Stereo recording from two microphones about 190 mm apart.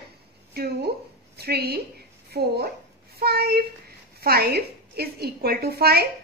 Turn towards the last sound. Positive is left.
turn(degrees=-55)  # may be behind; listen again after turning